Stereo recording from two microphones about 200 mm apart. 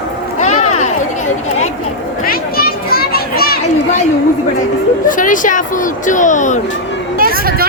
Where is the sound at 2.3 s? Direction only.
50° left (ahead or behind).